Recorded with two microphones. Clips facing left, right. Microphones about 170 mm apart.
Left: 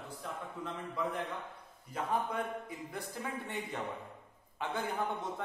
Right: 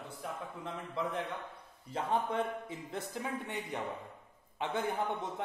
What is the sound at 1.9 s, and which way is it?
Speech, 25° right (ahead or behind).